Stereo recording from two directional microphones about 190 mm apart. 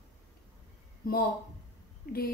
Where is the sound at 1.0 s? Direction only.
50° left (ahead or behind).